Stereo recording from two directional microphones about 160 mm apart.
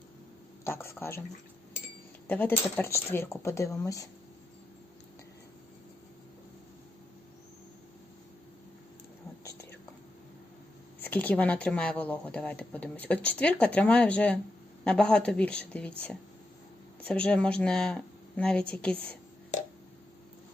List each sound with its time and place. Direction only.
0.6 s speech: 15° left (ahead or behind)
2.2 s speech: 10° left (ahead or behind)
11.0 s speech: 10° left (ahead or behind)